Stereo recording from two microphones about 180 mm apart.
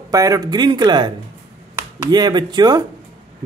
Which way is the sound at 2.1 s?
25° right (ahead or behind).